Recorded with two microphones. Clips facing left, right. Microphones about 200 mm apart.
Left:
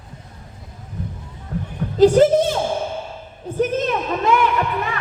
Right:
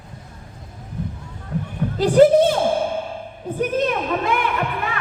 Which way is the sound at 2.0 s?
45° left (ahead or behind).